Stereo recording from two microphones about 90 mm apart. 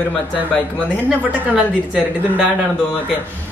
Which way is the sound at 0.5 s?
15° left (ahead or behind).